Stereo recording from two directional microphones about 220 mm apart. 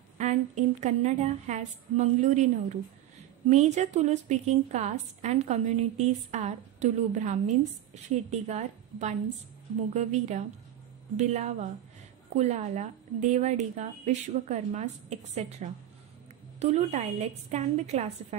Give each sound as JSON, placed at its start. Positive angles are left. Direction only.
{"t": 0.2, "sound": "a woman's voice", "side_deg": -35}